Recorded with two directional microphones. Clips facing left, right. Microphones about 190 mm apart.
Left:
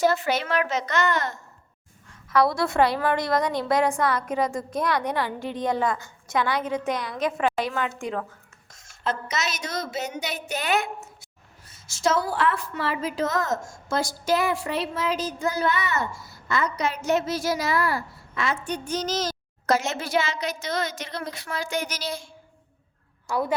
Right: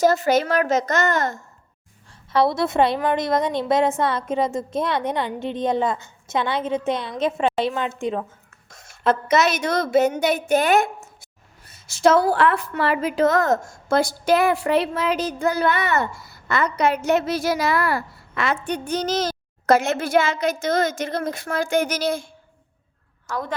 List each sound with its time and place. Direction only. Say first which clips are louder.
0.0 s a child's voice: right 5 dB; 40° right (ahead or behind)
2.3 s a woman's voice: right 2 dB; 25° right (ahead or behind)
8.7 s a woman's voice: right 8 dB; 60° right (ahead or behind)
11.7 s a woman's voice: right 7 dB; 60° right (ahead or behind)
23.3 s a woman's voice: left 3 dB; 10° left (ahead or behind)